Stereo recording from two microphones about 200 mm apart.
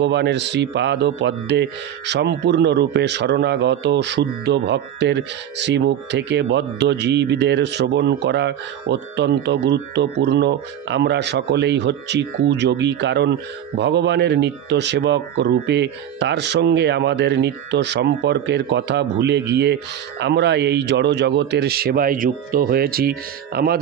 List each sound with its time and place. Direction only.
0.0 s a man's voice: 60° right (ahead or behind)